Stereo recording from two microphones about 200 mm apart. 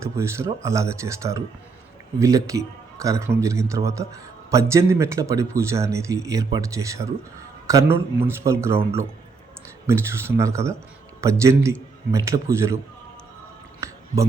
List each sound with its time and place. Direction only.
0.0 s speech: 15° right (ahead or behind)
9.8 s speech: 15° right (ahead or behind)
13.8 s a sound: 15° right (ahead or behind)